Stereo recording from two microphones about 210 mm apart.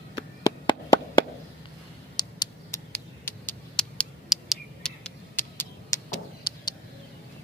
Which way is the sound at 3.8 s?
Centre (ahead or behind).